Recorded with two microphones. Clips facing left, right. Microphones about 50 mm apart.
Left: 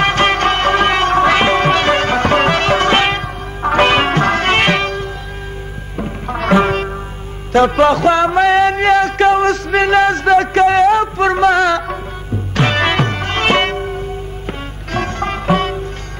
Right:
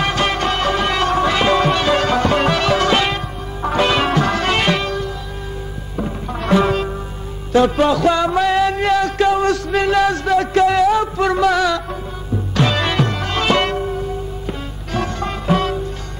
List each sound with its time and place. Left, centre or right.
0.0 s music: left
6.2 s music: left